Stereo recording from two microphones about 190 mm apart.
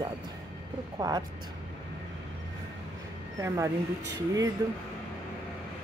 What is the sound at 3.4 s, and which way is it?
Speech, 15° right (ahead or behind).